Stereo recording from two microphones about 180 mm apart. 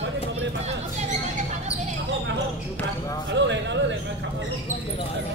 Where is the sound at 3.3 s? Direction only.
80° right.